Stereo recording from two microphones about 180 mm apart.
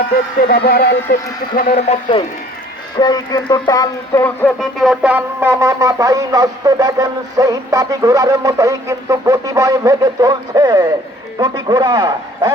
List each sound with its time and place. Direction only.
0.4 s speech: 60° left (ahead or behind)
1.8 s speech: 35° left (ahead or behind)
3.0 s speech: 20° left (ahead or behind)
4.6 s speech: centre (ahead or behind); by 12.5 s 25° right (ahead or behind)